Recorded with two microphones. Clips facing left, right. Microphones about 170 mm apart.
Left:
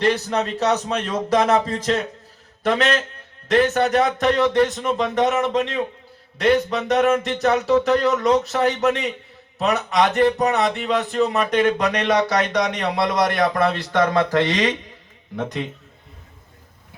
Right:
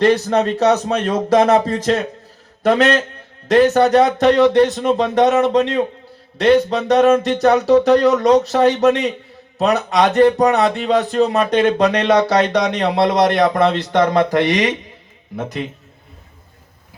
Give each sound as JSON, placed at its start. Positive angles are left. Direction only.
{"t": 0.0, "sound": "a man's voice", "side_deg": -40}